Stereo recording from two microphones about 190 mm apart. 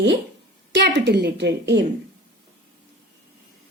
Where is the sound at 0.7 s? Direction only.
70° right (ahead or behind).